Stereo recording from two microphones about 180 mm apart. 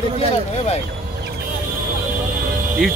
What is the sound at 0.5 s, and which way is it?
Speech, 35° left (ahead or behind).